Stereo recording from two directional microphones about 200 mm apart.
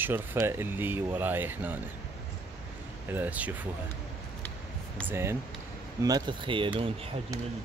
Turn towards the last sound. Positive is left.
turn(degrees=-20)  # may be behind; listen again after turning